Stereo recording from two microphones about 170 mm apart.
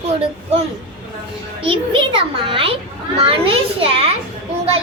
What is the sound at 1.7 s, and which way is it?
A child's voice, 30° right (ahead or behind).